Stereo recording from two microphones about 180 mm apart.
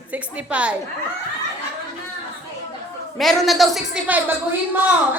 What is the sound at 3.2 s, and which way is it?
A woman's voice, centre (ahead or behind).